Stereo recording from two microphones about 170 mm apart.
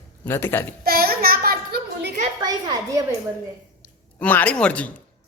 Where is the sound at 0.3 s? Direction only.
15° left (ahead or behind).